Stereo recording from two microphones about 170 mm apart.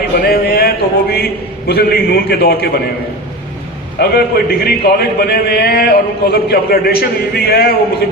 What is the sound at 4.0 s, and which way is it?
A man's voice, 65° left (ahead or behind).